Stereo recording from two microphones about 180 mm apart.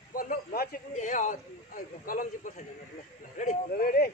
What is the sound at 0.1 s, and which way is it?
Speech, 50° left (ahead or behind).